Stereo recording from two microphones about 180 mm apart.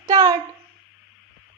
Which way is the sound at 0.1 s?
20° right (ahead or behind).